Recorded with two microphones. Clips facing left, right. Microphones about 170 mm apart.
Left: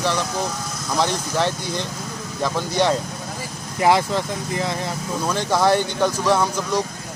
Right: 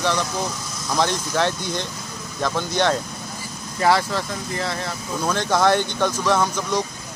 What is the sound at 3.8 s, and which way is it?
Speech, 15° left (ahead or behind).